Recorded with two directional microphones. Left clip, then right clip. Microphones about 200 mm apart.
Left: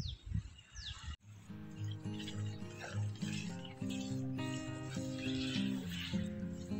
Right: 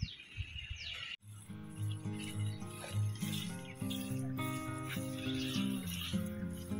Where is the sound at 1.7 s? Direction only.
5° left (ahead or behind).